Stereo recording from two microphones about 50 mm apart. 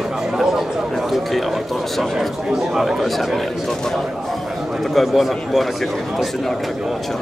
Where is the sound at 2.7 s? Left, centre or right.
Centre.